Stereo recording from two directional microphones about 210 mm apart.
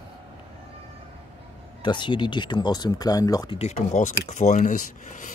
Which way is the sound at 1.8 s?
20° left (ahead or behind).